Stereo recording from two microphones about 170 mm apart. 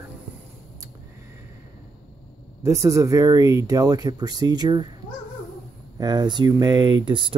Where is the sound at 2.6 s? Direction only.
20° right (ahead or behind).